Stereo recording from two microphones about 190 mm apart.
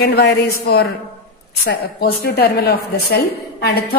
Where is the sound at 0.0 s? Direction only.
60° left (ahead or behind).